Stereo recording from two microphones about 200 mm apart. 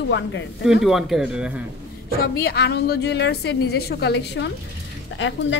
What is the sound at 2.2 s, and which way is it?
A woman's voice, 50° left (ahead or behind).